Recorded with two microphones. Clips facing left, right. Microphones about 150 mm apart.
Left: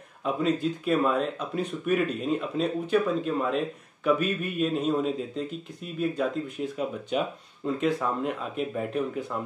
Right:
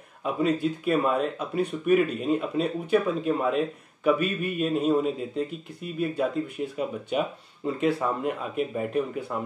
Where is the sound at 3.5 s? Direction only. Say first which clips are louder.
Right 2 dB; 5° right (ahead or behind).